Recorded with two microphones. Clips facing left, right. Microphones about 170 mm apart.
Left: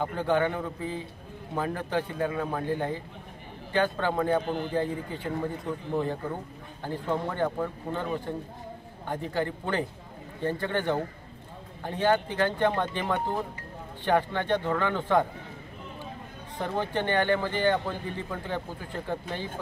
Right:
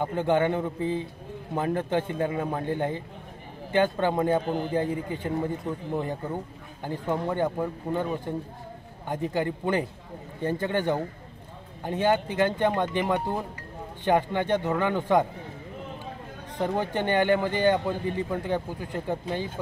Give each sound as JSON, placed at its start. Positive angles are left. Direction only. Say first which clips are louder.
{"t": 0.0, "sound": "a man's voice", "louder": "right 2 dB", "side_deg": -20}
{"t": 16.5, "sound": "a man's voice", "louder": "right 2 dB", "side_deg": -15}